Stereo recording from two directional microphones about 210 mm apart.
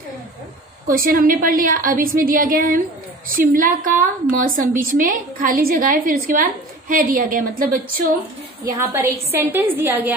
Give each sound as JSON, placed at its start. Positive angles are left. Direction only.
{"t": 0.8, "sound": "a woman's voice", "side_deg": -40}
{"t": 8.6, "sound": "a woman's voice", "side_deg": -15}